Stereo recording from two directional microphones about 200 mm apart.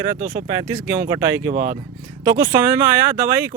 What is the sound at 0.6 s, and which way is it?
Speech, 10° right (ahead or behind).